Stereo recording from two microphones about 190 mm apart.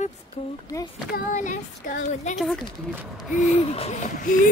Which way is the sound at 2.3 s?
Centre (ahead or behind).